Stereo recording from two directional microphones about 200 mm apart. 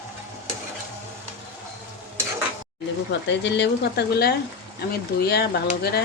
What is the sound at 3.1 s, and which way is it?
Speech, 60° left (ahead or behind).